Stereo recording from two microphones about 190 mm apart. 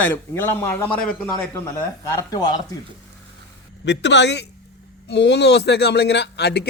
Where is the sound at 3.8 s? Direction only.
65° left (ahead or behind).